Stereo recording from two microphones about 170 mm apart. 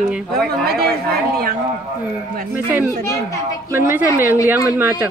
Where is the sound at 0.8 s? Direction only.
65° right (ahead or behind).